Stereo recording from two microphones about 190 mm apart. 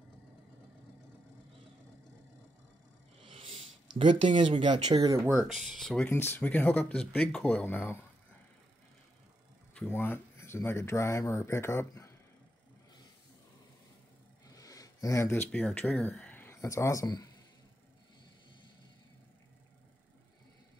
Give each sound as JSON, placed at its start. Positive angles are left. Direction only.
{"t": 3.2, "sound": "a sound", "side_deg": -30}
{"t": 4.4, "sound": "speech", "side_deg": -25}
{"t": 5.3, "sound": "speech", "side_deg": 0}
{"t": 9.8, "sound": "speech", "side_deg": 10}
{"t": 14.4, "sound": "speech", "side_deg": 20}